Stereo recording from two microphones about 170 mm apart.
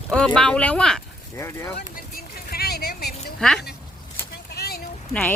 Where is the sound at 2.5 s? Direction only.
65° left (ahead or behind).